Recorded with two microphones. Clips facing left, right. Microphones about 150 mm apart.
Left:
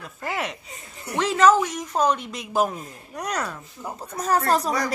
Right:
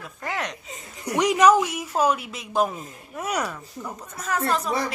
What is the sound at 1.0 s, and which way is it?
A woman's voice, 15° right (ahead or behind).